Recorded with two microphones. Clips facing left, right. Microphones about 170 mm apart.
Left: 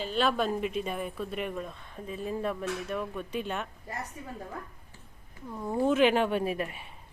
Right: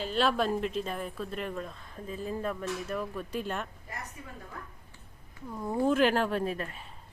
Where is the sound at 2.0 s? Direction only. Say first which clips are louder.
Left 1 dB; 30° right (ahead or behind).